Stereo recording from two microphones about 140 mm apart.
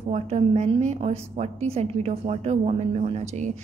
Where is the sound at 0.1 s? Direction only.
50° right (ahead or behind).